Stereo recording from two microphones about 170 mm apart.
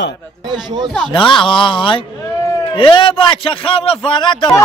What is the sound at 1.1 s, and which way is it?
A man's voice, 30° left (ahead or behind).